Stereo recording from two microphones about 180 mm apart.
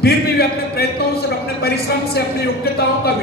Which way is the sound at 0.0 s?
60° left (ahead or behind).